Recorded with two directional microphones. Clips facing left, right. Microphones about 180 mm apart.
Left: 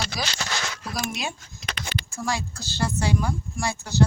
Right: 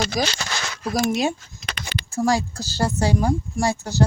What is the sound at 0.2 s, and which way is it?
A woman's voice, 45° right (ahead or behind).